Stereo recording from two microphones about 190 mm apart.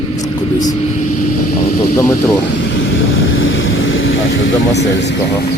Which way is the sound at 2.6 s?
65° left (ahead or behind).